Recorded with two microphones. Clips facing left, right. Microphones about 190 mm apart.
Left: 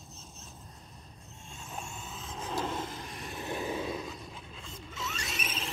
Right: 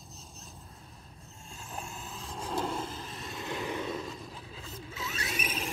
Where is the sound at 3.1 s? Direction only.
15° left (ahead or behind).